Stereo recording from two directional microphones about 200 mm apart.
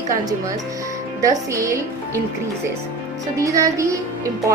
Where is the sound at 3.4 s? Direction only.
15° right (ahead or behind).